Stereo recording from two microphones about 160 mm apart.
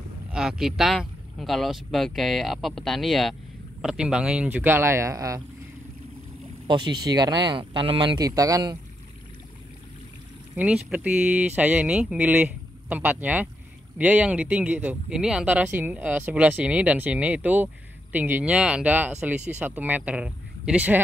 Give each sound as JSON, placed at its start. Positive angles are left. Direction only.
{"t": 0.3, "sound": "speech", "side_deg": -5}
{"t": 6.7, "sound": "speech", "side_deg": -30}
{"t": 10.5, "sound": "speech", "side_deg": -10}